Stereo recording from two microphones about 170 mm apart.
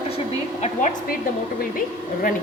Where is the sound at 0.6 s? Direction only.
45° left (ahead or behind).